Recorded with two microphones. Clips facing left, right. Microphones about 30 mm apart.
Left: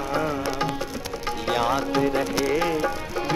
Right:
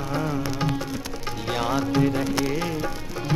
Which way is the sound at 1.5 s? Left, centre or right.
Centre.